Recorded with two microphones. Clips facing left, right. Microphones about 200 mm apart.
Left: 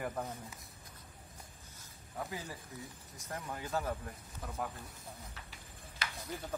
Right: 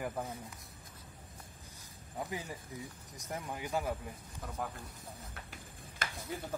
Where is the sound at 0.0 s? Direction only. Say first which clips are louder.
Even; 10° right (ahead or behind).